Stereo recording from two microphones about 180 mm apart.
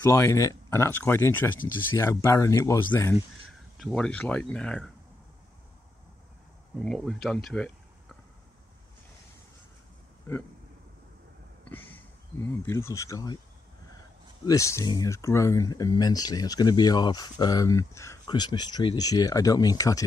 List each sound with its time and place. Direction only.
0.0 s speech: 15° left (ahead or behind)
3.7 s speech: centre (ahead or behind)
6.8 s speech: centre (ahead or behind)
11.7 s speech: 10° left (ahead or behind)
14.4 s speech: 20° left (ahead or behind)